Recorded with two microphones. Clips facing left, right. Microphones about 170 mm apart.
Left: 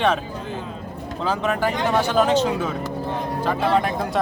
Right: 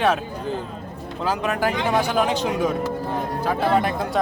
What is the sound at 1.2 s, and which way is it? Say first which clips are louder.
Speech: even; 10° right (ahead or behind).